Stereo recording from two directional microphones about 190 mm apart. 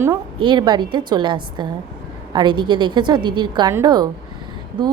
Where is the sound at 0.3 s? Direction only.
25° right (ahead or behind).